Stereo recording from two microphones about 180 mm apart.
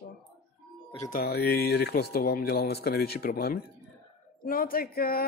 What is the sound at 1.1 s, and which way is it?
Speech, 60° left (ahead or behind).